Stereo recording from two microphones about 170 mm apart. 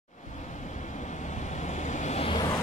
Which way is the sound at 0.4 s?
45° left (ahead or behind).